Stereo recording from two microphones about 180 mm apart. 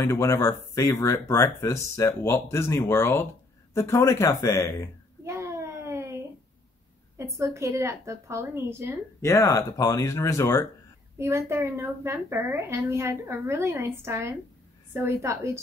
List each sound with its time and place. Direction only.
0.0 s speech: 15° left (ahead or behind)
5.2 s a sound: 15° right (ahead or behind)
7.2 s a woman's voice: 15° right (ahead or behind)
9.2 s speech: 15° left (ahead or behind)
11.1 s a woman's voice: 15° right (ahead or behind)